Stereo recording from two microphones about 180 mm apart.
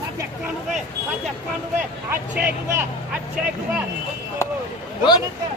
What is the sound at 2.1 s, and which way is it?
Speech, 10° right (ahead or behind).